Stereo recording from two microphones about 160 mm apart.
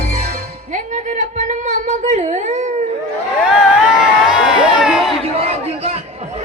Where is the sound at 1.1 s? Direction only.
50° right (ahead or behind).